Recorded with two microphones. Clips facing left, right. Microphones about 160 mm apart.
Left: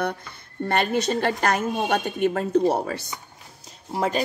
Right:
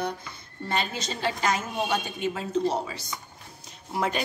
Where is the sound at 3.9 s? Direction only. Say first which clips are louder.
Left 4 dB; 35° left (ahead or behind).